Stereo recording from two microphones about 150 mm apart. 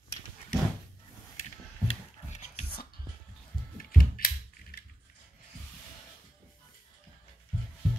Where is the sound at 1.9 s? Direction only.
50° left (ahead or behind).